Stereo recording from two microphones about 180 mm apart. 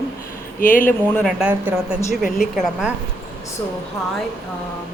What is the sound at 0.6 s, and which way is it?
Speech, 50° left (ahead or behind).